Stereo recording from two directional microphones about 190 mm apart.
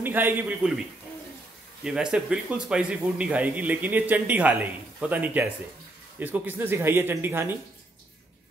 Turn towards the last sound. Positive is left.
turn(degrees=-10)  # may be behind; listen again after turning